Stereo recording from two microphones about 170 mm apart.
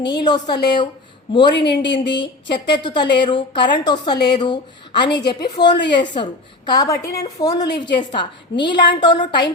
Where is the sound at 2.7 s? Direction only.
25° left (ahead or behind).